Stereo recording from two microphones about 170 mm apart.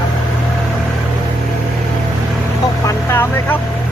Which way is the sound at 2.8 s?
15° left (ahead or behind).